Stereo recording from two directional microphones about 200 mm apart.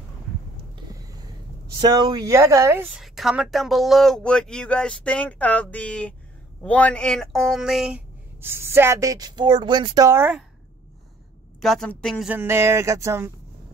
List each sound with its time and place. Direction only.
0.7 s a sound: 20° right (ahead or behind)
1.9 s speech: 20° right (ahead or behind)
11.6 s speech: 5° left (ahead or behind); by 13.3 s 15° right (ahead or behind)